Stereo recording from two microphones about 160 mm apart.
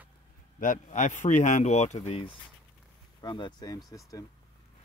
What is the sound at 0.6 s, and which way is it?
Speech, 55° left (ahead or behind).